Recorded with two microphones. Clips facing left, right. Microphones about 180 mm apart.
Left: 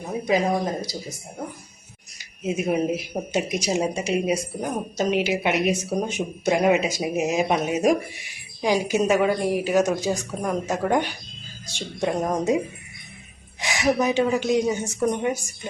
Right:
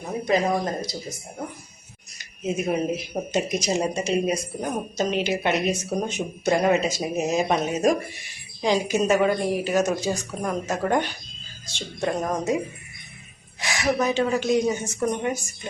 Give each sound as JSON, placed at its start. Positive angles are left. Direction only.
{"t": 0.3, "sound": "speech", "side_deg": 10}
{"t": 2.1, "sound": "speech", "side_deg": 10}
{"t": 13.6, "sound": "a sound", "side_deg": 20}
{"t": 14.0, "sound": "speech", "side_deg": 15}